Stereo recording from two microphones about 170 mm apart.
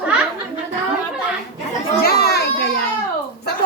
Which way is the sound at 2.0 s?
70° left (ahead or behind).